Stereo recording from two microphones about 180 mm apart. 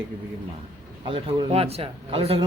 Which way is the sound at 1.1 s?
30° right (ahead or behind).